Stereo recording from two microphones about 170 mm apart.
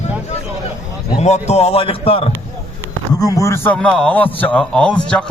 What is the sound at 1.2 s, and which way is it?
A man's voice, 40° left (ahead or behind).